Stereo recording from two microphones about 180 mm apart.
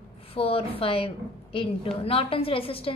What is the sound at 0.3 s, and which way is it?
A woman's voice, 30° left (ahead or behind).